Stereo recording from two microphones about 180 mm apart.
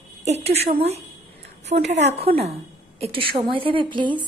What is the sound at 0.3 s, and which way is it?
A woman's voice, 35° right (ahead or behind).